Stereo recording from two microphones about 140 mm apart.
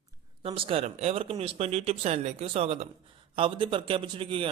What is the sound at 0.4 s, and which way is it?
A man's voice, 40° right (ahead or behind).